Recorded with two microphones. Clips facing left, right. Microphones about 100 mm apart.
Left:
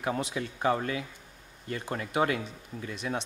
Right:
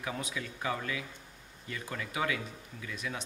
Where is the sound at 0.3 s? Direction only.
40° left (ahead or behind).